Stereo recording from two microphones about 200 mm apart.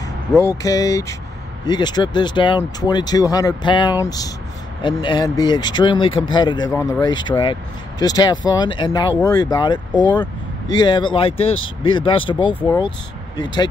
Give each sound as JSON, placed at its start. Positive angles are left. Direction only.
{"t": 0.3, "sound": "speech", "side_deg": 15}